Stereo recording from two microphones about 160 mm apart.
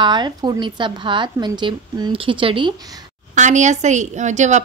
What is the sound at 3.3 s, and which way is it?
A woman's voice, 50° right (ahead or behind).